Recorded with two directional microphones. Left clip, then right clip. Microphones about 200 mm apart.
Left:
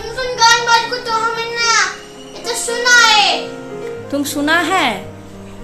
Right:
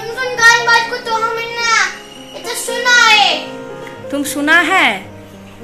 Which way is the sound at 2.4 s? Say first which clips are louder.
Even; 40° right (ahead or behind).